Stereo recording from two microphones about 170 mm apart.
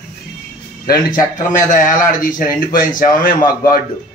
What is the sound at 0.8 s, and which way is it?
A man's voice, 55° left (ahead or behind).